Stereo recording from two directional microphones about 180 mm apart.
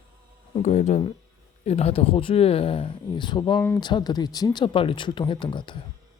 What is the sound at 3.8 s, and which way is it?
Speech, 25° left (ahead or behind).